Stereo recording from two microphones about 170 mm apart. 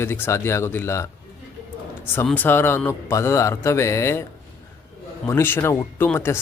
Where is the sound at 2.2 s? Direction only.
10° left (ahead or behind).